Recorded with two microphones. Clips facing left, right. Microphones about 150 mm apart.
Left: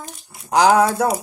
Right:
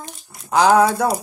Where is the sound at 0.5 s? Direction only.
10° left (ahead or behind).